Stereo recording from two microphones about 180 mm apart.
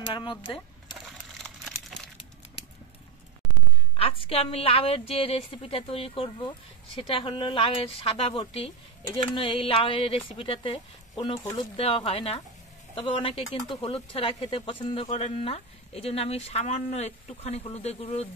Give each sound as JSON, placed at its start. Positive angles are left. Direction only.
{"t": 0.0, "sound": "speech", "side_deg": 25}
{"t": 3.9, "sound": "speech", "side_deg": 30}